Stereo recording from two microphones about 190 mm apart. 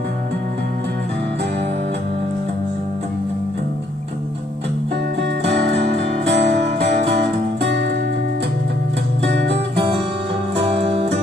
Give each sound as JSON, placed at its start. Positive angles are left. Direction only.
{"t": 5.2, "sound": "music", "side_deg": -70}
{"t": 6.3, "sound": "music", "side_deg": -35}
{"t": 9.2, "sound": "music", "side_deg": -65}
{"t": 10.5, "sound": "music", "side_deg": -30}